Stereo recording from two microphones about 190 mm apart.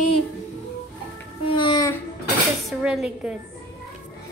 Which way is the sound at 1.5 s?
25° left (ahead or behind).